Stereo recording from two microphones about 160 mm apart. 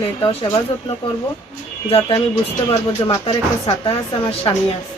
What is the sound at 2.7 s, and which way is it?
Speech, 25° left (ahead or behind).